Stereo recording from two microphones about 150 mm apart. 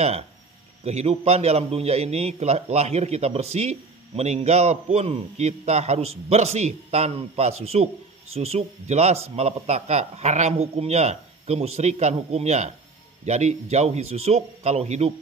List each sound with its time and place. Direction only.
0.8 s a man's voice: 45° right (ahead or behind)